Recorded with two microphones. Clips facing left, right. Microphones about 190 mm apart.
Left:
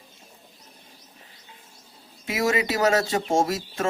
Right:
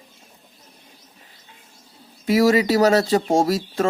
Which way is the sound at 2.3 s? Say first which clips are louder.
Right 8 dB; 35° right (ahead or behind).